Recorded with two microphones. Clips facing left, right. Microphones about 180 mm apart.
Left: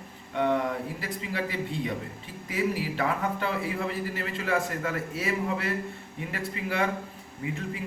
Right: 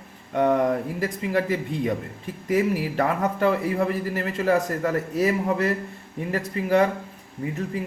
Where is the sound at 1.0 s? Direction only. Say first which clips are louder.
Right 8 dB; 45° right (ahead or behind).